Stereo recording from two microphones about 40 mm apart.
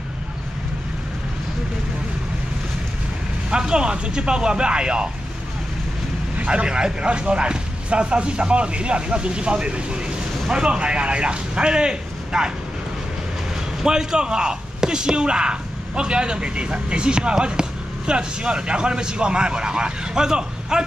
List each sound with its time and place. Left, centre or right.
3.4 s speech: right
6.4 s speech: right
13.8 s speech: centre